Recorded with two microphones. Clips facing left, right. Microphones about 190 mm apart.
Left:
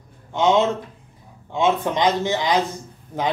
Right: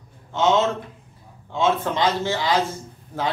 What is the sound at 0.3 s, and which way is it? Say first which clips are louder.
A man's voice: left 2 dB; 15° left (ahead or behind).